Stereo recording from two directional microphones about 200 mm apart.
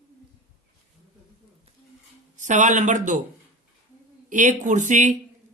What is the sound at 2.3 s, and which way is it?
Speech, 40° right (ahead or behind).